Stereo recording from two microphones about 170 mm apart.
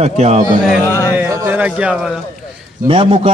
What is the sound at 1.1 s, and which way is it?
Speech, 15° right (ahead or behind).